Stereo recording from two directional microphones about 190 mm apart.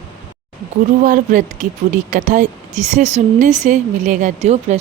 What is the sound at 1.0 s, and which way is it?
Speech, 45° right (ahead or behind).